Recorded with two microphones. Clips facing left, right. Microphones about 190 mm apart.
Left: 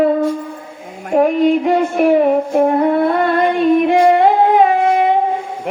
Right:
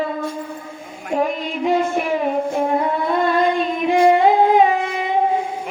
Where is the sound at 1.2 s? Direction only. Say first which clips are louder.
Left 10 dB; 60° left (ahead or behind).